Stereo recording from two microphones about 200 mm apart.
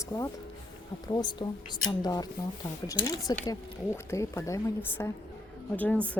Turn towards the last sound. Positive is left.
turn(degrees=10)  # may be behind; listen again after turning